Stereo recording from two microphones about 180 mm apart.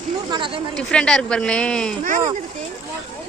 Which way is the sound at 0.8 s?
5° left (ahead or behind).